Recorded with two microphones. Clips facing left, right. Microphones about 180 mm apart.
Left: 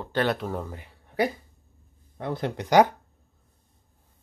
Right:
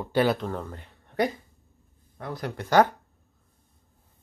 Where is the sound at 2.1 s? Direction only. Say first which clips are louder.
Left 4 dB; 25° left (ahead or behind).